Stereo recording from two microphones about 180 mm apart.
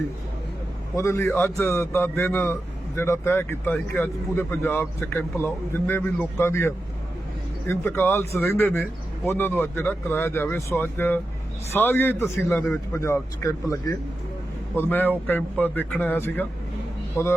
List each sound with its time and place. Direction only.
0.9 s a man's voice: 15° left (ahead or behind)